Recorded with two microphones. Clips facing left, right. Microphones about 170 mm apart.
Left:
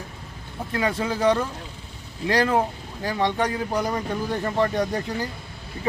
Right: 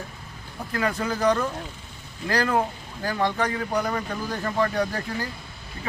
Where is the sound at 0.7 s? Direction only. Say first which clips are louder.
Left 1 dB; 25° left (ahead or behind).